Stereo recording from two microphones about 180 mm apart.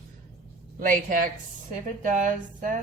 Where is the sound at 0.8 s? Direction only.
50° right (ahead or behind).